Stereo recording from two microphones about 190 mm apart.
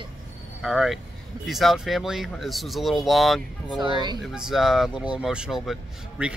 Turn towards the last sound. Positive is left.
turn(degrees=-5)  # may be behind; listen again after turning